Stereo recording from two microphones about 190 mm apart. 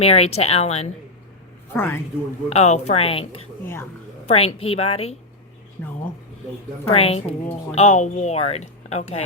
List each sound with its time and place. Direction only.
0.0 s speech: 30° left (ahead or behind)
1.7 s speech: 10° left (ahead or behind)
2.5 s speech: 35° left (ahead or behind)
3.6 s speech: 10° left (ahead or behind)
4.3 s speech: 30° left (ahead or behind)
6.8 s speech: 30° left (ahead or behind)